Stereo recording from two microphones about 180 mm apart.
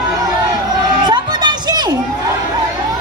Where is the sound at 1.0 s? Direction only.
25° right (ahead or behind).